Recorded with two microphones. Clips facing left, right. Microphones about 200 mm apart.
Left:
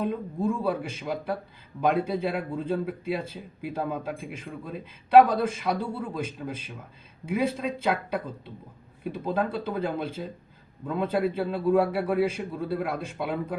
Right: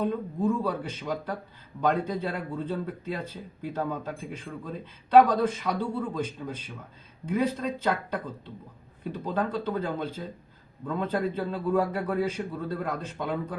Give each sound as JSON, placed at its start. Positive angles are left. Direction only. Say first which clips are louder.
{"t": 0.0, "sound": "speech", "louder": "right 1 dB", "side_deg": 10}